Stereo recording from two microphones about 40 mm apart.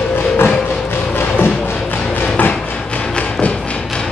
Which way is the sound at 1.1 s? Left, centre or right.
Left.